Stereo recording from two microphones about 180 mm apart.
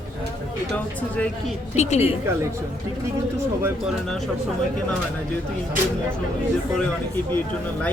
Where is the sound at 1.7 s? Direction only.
40° left (ahead or behind).